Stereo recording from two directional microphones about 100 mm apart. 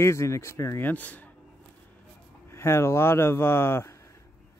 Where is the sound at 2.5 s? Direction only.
25° left (ahead or behind).